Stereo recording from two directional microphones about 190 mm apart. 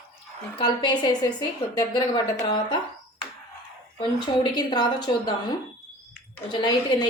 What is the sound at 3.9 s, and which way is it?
Speech, 25° left (ahead or behind).